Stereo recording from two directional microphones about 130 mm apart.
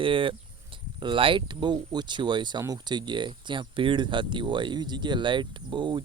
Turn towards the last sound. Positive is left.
turn(degrees=-35)  # may be behind; listen again after turning